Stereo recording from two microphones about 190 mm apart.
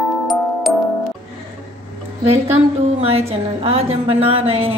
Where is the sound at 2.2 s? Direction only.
35° right (ahead or behind).